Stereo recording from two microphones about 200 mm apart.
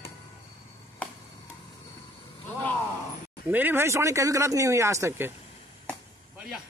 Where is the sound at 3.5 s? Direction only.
10° right (ahead or behind).